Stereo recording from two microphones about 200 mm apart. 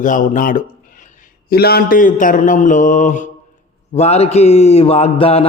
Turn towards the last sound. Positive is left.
turn(degrees=30)  # may be behind; listen again after turning